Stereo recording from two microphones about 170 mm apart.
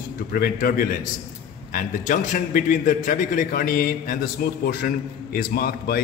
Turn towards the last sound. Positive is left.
turn(degrees=65)  # may be behind; listen again after turning